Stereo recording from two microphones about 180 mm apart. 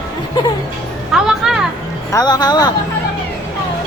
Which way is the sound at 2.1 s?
20° left (ahead or behind).